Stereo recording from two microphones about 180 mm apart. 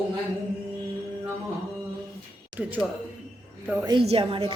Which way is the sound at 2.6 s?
Centre (ahead or behind).